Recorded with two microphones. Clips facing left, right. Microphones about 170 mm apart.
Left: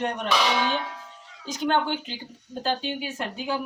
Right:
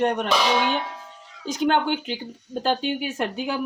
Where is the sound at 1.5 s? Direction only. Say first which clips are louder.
Right 3 dB; 65° right (ahead or behind).